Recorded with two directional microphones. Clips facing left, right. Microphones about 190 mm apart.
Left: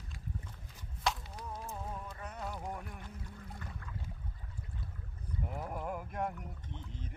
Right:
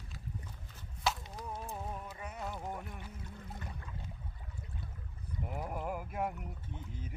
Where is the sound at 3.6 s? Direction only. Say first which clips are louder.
Right 1 dB; 20° right (ahead or behind).